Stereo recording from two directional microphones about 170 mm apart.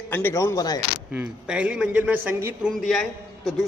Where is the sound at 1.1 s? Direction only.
10° right (ahead or behind).